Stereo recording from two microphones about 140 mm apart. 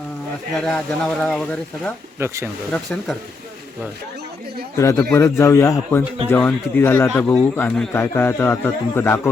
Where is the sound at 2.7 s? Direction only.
5° left (ahead or behind).